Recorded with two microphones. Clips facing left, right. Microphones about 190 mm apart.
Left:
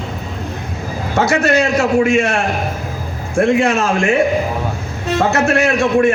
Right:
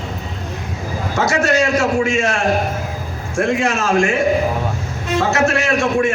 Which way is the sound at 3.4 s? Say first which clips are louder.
Left 4 dB; 60° left (ahead or behind).